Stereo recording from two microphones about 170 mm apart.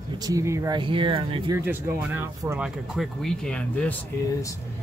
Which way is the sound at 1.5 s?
15° right (ahead or behind).